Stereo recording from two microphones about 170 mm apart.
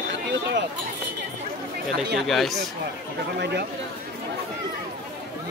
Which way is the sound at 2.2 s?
Centre (ahead or behind).